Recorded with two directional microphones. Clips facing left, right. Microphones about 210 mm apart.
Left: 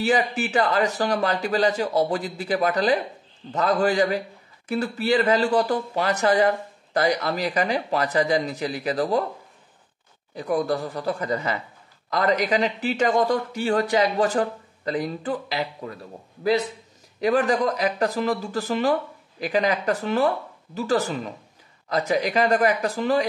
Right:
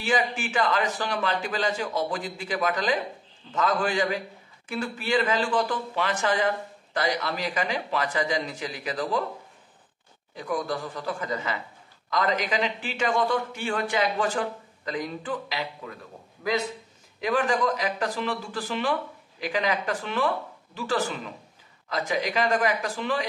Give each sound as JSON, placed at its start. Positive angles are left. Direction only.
{"t": 0.0, "sound": "a man's voice", "side_deg": 40}
{"t": 10.3, "sound": "a man's voice", "side_deg": 40}